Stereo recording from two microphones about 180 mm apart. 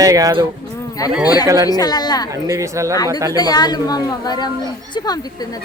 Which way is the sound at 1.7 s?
20° left (ahead or behind).